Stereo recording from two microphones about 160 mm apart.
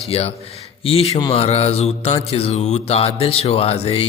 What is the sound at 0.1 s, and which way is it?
Speech, 40° left (ahead or behind).